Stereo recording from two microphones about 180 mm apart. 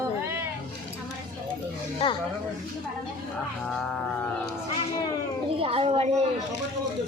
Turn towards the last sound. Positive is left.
turn(degrees=-35)  # may be behind; listen again after turning